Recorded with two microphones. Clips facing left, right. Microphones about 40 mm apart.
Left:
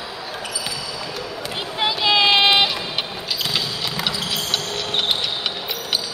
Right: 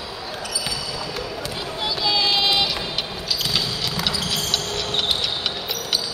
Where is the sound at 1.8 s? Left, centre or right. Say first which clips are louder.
Left 5 dB; left.